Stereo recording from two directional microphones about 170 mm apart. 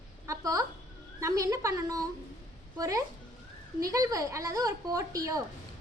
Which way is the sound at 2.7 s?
20° right (ahead or behind).